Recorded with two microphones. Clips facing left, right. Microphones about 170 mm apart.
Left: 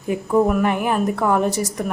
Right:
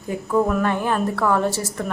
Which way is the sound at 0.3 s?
20° left (ahead or behind).